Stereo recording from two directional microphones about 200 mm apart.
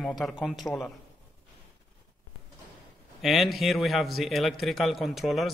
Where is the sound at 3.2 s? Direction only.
Centre (ahead or behind).